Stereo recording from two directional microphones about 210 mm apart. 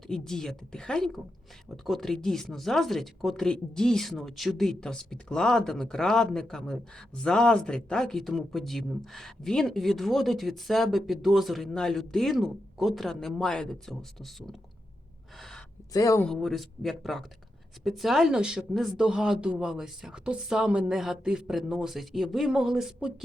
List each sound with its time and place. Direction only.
0.1 s speech: centre (ahead or behind)
15.4 s gasp: centre (ahead or behind)
15.9 s speech: 15° left (ahead or behind)
16.2 s speech: centre (ahead or behind)